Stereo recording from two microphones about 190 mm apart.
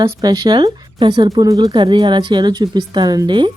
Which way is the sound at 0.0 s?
20° right (ahead or behind).